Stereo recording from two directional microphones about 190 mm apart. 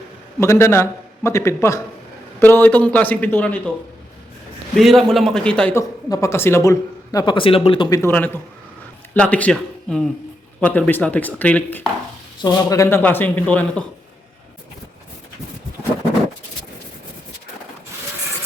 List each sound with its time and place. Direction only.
0.3 s speech: 15° left (ahead or behind)
4.8 s a man's voice: centre (ahead or behind)
12.4 s speech: 20° left (ahead or behind)